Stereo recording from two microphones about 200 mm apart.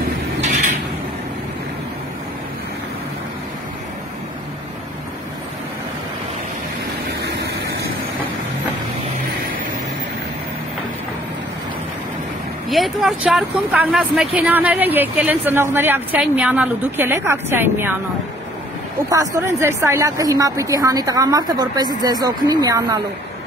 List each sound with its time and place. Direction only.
0.4 s a sound: 35° right (ahead or behind)
7.2 s vehicle: 60° right (ahead or behind)
12.6 s speech: centre (ahead or behind)
19.0 s speech: 15° right (ahead or behind)